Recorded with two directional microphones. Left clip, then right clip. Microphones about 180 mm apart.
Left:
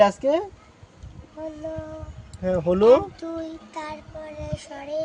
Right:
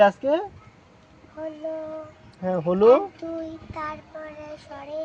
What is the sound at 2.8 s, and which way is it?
Speech, 25° left (ahead or behind).